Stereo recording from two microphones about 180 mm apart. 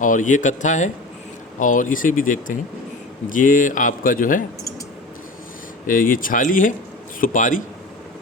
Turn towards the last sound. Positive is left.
turn(degrees=45)  # may be behind; listen again after turning